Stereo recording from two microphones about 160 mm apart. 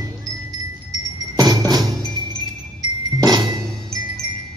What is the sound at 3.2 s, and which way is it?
Music, 25° right (ahead or behind).